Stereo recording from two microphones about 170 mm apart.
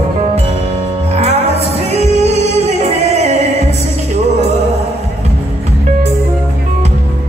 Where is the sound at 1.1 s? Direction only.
40° right (ahead or behind).